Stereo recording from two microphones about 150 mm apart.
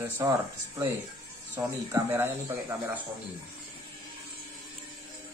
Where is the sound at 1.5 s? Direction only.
10° right (ahead or behind).